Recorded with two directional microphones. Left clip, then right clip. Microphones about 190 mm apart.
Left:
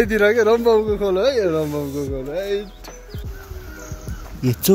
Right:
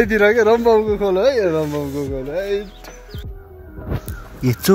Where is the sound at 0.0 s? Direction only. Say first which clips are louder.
Right 2 dB; 25° right (ahead or behind).